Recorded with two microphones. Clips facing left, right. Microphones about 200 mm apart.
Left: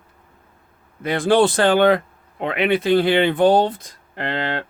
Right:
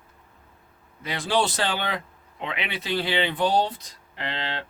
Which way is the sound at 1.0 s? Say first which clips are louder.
Left 9 dB; 55° left (ahead or behind).